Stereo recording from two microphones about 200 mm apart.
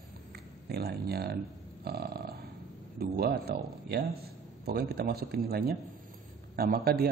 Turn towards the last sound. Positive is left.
turn(degrees=-50)  # may be behind; listen again after turning